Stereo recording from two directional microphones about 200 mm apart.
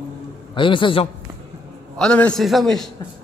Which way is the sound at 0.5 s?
25° left (ahead or behind).